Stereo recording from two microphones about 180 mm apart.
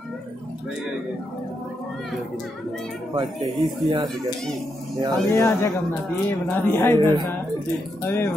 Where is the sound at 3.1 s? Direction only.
25° right (ahead or behind).